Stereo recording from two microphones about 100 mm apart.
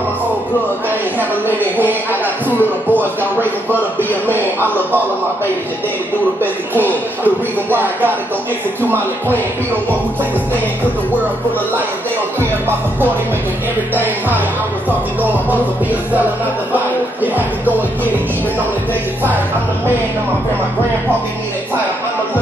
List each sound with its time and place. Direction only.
2.9 s speech: 20° right (ahead or behind)
6.4 s speech: 20° right (ahead or behind)
16.7 s music: 15° right (ahead or behind)